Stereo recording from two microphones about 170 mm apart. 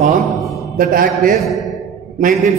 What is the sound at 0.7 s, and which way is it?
Speech, 55° right (ahead or behind).